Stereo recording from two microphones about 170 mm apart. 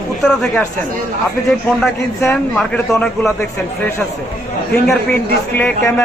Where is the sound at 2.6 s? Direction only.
5° left (ahead or behind).